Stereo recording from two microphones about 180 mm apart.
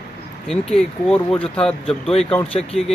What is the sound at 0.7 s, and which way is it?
Speech, 5° left (ahead or behind).